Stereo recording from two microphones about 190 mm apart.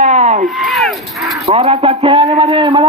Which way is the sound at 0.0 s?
40° right (ahead or behind).